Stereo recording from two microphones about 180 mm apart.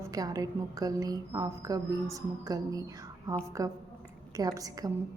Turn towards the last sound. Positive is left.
turn(degrees=-20)  # may be behind; listen again after turning